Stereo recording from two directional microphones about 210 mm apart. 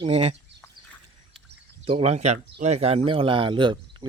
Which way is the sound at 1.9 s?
30° right (ahead or behind).